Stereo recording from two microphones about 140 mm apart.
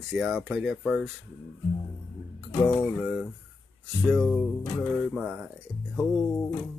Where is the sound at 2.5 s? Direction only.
20° left (ahead or behind).